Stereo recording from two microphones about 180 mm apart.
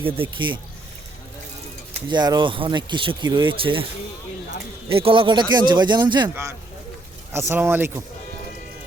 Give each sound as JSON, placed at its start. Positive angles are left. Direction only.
{"t": 0.3, "sound": "speech", "side_deg": -25}
{"t": 1.9, "sound": "speech", "side_deg": -25}
{"t": 4.9, "sound": "speech", "side_deg": -30}
{"t": 6.2, "sound": "speech", "side_deg": -10}